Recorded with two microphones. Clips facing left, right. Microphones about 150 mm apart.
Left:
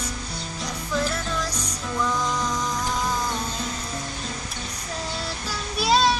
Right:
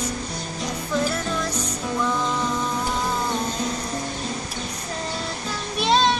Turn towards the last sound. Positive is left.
turn(degrees=5)  # may be behind; listen again after turning